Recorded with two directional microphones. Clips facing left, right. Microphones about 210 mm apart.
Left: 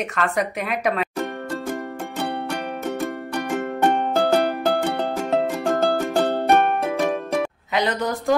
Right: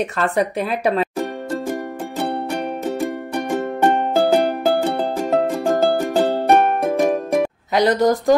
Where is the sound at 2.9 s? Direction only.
15° right (ahead or behind).